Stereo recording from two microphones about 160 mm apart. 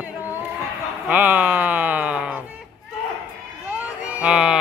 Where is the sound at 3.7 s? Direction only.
10° right (ahead or behind).